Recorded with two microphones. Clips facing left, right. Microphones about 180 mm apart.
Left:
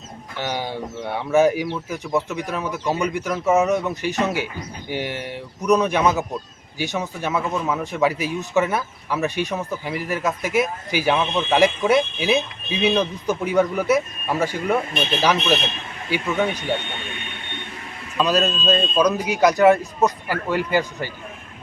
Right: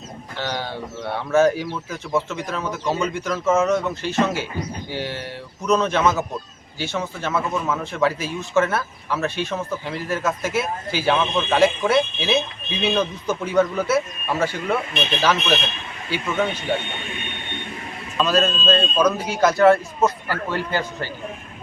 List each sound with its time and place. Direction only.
0.3 s speech: 15° left (ahead or behind)
18.2 s speech: 15° left (ahead or behind)